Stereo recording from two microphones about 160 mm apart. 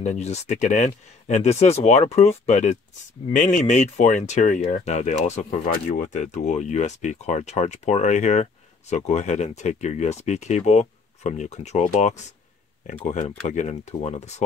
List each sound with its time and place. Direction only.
0.0 s speech: 45° left (ahead or behind)
13.1 s speech: 50° left (ahead or behind)